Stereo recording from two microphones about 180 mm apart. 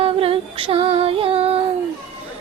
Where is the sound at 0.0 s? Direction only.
30° right (ahead or behind).